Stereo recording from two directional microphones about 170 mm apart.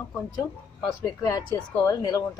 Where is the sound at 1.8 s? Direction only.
25° left (ahead or behind).